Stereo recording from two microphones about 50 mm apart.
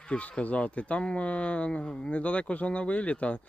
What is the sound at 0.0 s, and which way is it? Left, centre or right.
Speech, left.